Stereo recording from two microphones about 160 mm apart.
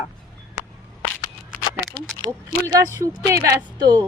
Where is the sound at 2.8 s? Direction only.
20° right (ahead or behind).